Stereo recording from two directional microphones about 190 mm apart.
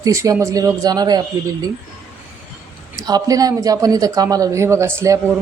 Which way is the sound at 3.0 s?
20° right (ahead or behind).